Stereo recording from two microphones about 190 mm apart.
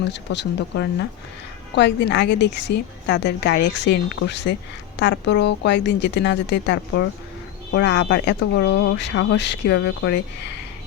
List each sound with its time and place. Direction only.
0.1 s a woman's voice: 65° left (ahead or behind)